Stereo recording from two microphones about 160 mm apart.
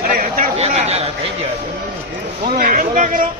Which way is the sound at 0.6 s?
45° right (ahead or behind).